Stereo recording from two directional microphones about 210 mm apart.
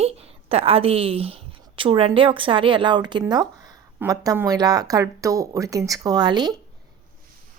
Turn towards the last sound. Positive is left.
turn(degrees=-20)  # may be behind; listen again after turning